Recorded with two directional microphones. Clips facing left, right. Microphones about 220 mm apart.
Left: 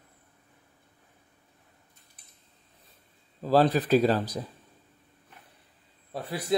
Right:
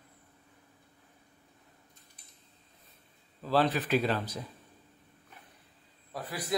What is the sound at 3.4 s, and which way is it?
Speech, 40° left (ahead or behind).